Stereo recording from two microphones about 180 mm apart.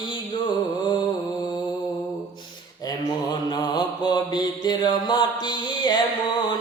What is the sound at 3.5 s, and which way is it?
Mantra, 25° left (ahead or behind).